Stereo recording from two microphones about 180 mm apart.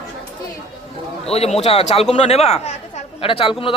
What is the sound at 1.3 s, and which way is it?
A man's voice, 35° left (ahead or behind).